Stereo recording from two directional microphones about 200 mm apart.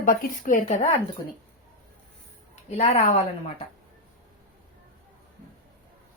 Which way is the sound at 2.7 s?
30° left (ahead or behind).